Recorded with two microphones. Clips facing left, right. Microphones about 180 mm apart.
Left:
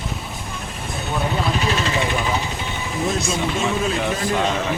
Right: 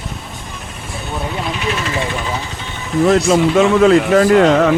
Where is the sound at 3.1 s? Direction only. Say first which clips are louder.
Right 11 dB; 80° right.